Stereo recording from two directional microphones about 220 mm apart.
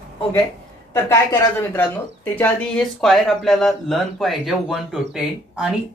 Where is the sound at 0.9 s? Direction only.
10° left (ahead or behind).